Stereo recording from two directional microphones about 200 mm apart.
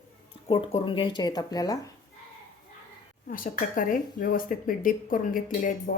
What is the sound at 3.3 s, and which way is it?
Speech, 45° left (ahead or behind).